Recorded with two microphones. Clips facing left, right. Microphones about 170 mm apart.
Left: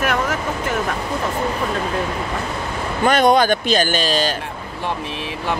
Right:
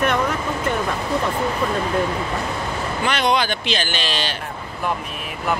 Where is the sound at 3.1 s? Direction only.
45° left (ahead or behind).